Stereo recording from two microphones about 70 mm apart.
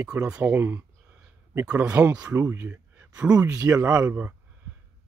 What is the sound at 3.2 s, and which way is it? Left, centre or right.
Speech, centre.